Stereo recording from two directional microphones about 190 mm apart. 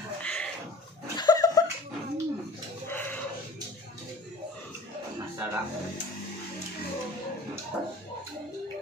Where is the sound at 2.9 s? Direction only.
10° left (ahead or behind).